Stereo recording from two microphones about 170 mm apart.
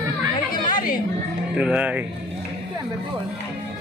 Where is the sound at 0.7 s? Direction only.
55° left (ahead or behind).